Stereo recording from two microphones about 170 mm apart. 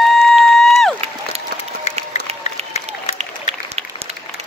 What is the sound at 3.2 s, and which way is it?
Applause, 35° right (ahead or behind).